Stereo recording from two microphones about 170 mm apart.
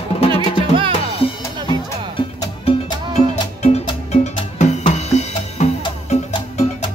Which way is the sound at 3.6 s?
40° left (ahead or behind).